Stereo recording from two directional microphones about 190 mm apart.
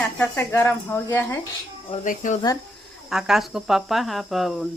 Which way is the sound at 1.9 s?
45° left (ahead or behind).